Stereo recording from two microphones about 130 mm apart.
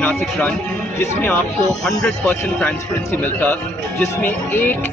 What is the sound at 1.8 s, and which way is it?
Speech, 10° left (ahead or behind).